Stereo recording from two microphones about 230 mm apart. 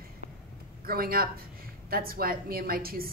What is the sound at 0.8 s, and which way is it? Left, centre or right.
A woman's voice, right.